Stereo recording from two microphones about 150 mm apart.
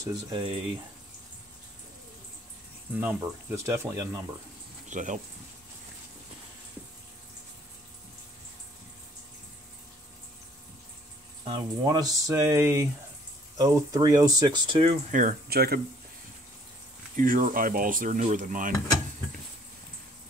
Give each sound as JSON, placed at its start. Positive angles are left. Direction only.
{"t": 0.3, "sound": "speech", "side_deg": -35}
{"t": 3.0, "sound": "speech", "side_deg": -15}
{"t": 4.8, "sound": "speech", "side_deg": -55}
{"t": 11.4, "sound": "speech", "side_deg": -25}
{"t": 15.0, "sound": "speech", "side_deg": -60}
{"t": 17.2, "sound": "speech", "side_deg": -65}